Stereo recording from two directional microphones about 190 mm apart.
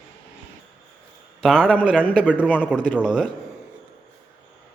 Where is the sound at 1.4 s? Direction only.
5° left (ahead or behind).